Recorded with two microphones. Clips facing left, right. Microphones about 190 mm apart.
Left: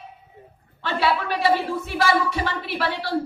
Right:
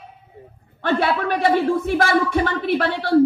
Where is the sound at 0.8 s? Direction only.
50° right (ahead or behind).